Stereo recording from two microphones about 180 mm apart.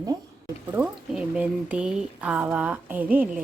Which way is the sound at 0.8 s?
5° right (ahead or behind).